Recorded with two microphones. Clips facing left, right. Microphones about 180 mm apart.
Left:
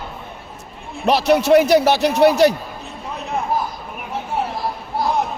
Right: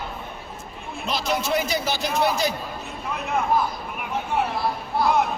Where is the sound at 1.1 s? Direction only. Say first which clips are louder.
Left 11 dB; 70° left (ahead or behind).